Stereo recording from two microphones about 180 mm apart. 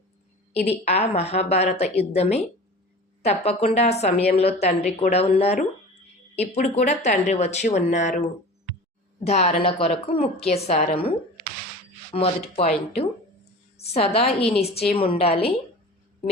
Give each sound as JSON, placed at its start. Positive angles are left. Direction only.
{"t": 0.9, "sound": "speech", "side_deg": 35}
{"t": 9.2, "sound": "speech", "side_deg": 35}
{"t": 12.1, "sound": "speech", "side_deg": 30}